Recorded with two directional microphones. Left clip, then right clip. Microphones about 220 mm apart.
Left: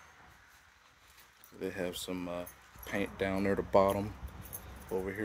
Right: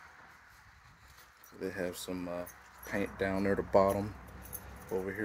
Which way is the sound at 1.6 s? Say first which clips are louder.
Even; 5° left (ahead or behind).